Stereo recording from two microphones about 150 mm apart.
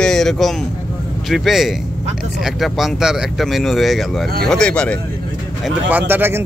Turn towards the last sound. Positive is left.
turn(degrees=-15)  # may be behind; listen again after turning